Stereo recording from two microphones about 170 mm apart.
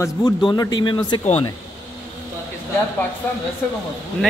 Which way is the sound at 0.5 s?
25° left (ahead or behind).